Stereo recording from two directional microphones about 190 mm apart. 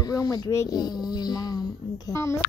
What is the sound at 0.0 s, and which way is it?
A child's voice, 20° left (ahead or behind).